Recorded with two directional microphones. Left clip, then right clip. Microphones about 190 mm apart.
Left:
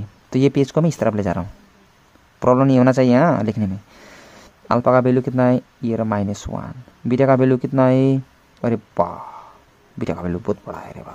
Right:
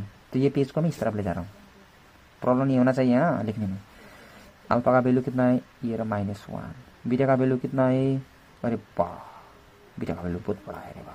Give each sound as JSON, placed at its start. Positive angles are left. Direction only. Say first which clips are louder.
{"t": 0.3, "sound": "speech", "louder": "left 7 dB", "side_deg": 30}
{"t": 2.4, "sound": "speech", "louder": "left 8 dB", "side_deg": 30}
{"t": 4.6, "sound": "speech", "louder": "left 6 dB", "side_deg": 25}